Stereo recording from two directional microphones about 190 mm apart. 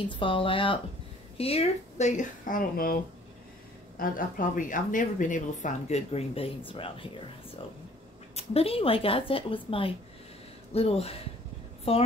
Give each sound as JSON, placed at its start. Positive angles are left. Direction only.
{"t": 0.1, "sound": "speech", "side_deg": 25}
{"t": 4.0, "sound": "speech", "side_deg": 45}
{"t": 8.4, "sound": "speech", "side_deg": 30}